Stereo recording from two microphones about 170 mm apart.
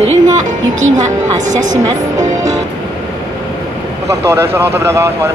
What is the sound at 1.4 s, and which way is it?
Speech, 50° right (ahead or behind).